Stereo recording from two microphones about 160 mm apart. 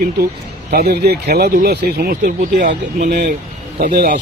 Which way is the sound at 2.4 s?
55° right (ahead or behind).